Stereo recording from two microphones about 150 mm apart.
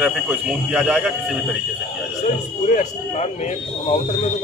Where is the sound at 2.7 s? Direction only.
55° left (ahead or behind).